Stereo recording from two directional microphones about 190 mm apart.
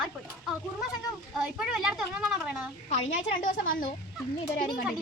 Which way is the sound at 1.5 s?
5° right (ahead or behind).